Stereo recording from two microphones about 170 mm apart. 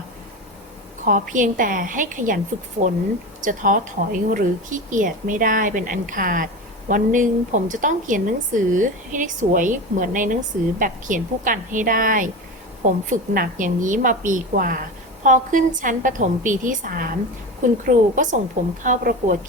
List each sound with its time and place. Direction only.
1.0 s speech: 50° right (ahead or behind)